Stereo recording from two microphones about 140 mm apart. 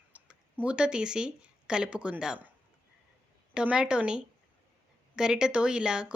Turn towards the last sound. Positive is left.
turn(degrees=-5)  # may be behind; listen again after turning